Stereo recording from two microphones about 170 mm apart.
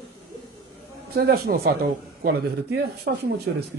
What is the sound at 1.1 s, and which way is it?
Speech, 65° right (ahead or behind).